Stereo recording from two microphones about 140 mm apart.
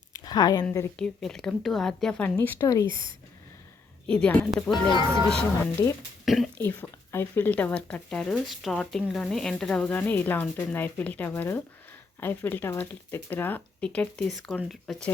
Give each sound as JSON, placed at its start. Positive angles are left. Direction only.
{"t": 0.3, "sound": "a woman's voice", "side_deg": 30}
{"t": 0.9, "sound": "speech", "side_deg": 5}
{"t": 4.0, "sound": "speech", "side_deg": 10}
{"t": 4.7, "sound": "speech", "side_deg": 35}
{"t": 5.8, "sound": "speech", "side_deg": -30}
{"t": 6.2, "sound": "speech", "side_deg": 0}
{"t": 6.6, "sound": "speech", "side_deg": 15}